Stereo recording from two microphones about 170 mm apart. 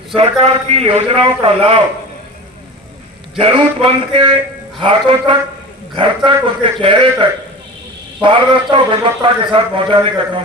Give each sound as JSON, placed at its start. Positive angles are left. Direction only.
{"t": 0.1, "sound": "a man's voice", "side_deg": -35}
{"t": 3.3, "sound": "a man's voice", "side_deg": -35}